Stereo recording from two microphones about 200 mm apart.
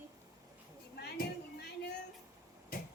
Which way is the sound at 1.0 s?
55° left (ahead or behind).